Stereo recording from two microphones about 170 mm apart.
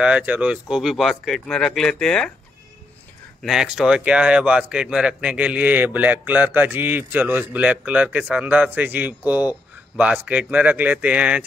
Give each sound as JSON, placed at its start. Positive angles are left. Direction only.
{"t": 0.0, "sound": "speech", "side_deg": -5}
{"t": 3.4, "sound": "speech", "side_deg": -5}